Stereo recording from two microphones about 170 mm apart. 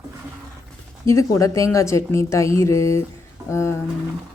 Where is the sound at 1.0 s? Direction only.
20° left (ahead or behind).